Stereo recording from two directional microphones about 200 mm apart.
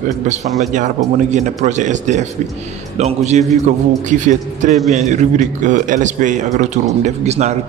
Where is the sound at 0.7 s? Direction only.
35° right (ahead or behind).